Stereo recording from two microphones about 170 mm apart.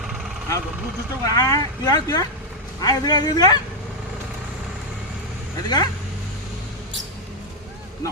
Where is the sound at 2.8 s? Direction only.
25° left (ahead or behind).